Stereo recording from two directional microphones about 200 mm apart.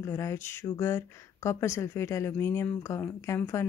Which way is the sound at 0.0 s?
15° left (ahead or behind).